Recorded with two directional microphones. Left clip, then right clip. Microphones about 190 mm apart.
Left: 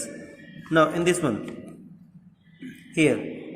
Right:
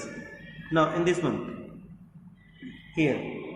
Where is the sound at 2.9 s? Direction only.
90° left.